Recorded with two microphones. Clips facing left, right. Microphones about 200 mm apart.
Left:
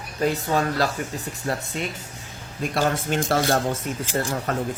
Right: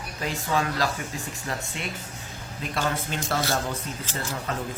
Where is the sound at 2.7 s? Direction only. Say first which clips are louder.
Left 5 dB; 45° left (ahead or behind).